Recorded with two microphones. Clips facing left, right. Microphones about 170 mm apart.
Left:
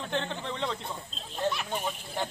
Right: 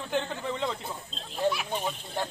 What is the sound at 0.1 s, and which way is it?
Speech, 5° right (ahead or behind).